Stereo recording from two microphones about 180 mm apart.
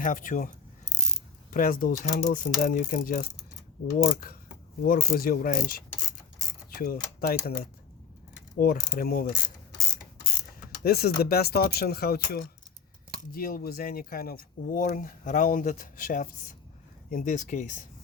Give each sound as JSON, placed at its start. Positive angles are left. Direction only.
{"t": 0.0, "sound": "speech", "side_deg": 45}
{"t": 10.8, "sound": "speech", "side_deg": 60}